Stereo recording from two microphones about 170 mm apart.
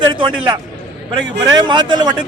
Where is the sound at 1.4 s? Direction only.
25° right (ahead or behind).